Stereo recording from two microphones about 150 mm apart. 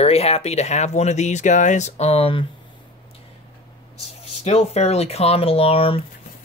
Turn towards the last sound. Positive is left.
turn(degrees=40)  # may be behind; listen again after turning